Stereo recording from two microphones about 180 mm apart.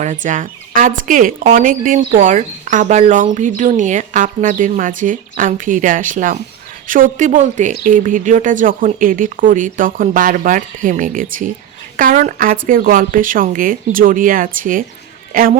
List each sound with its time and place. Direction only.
0.0 s a woman's voice: 45° right (ahead or behind)